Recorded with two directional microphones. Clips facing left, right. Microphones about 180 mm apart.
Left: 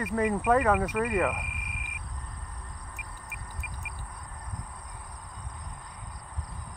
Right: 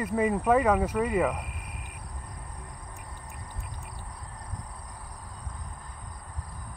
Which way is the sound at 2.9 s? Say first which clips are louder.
Right 1 dB; 30° right (ahead or behind).